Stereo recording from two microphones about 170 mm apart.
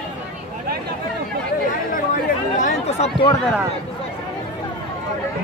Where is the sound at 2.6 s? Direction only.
45° left (ahead or behind).